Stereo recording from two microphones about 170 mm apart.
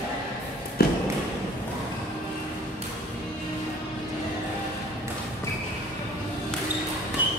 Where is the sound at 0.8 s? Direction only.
65° left (ahead or behind).